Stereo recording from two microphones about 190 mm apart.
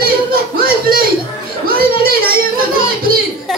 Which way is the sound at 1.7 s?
50° right (ahead or behind).